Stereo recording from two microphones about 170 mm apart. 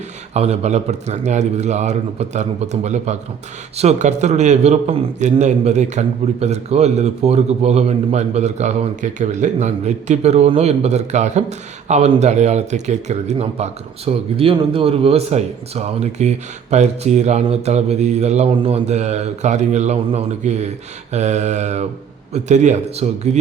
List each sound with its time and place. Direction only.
0.3 s a man's voice: 40° right (ahead or behind)
21.1 s mantra: 40° right (ahead or behind)
22.3 s a man's voice: 45° right (ahead or behind)